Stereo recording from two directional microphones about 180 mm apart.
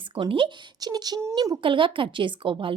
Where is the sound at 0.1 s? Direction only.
30° right (ahead or behind).